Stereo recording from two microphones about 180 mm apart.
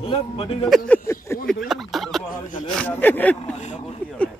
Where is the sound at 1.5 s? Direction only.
Centre (ahead or behind).